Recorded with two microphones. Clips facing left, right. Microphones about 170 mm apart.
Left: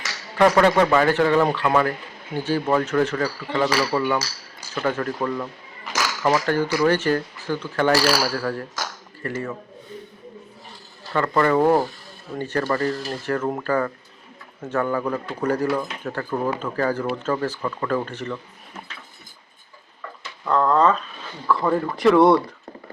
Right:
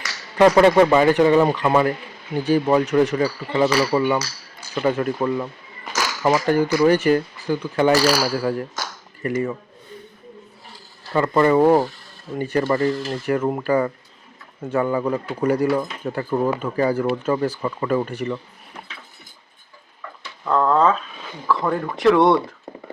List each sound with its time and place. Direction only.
0.3 s speech: 20° right (ahead or behind)
11.1 s speech: 15° right (ahead or behind)
20.4 s speech: 5° right (ahead or behind)